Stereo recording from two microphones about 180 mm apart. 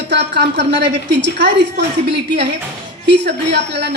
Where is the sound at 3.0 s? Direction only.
70° right (ahead or behind).